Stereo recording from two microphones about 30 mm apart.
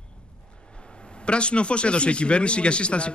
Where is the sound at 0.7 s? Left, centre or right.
Left.